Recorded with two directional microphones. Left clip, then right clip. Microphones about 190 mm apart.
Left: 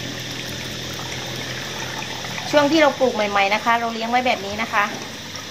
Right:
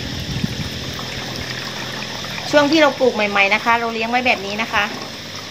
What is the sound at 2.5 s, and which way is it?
Speech, 25° right (ahead or behind).